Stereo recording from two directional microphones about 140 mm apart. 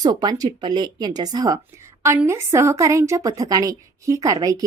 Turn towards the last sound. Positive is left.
turn(degrees=-25)  # may be behind; listen again after turning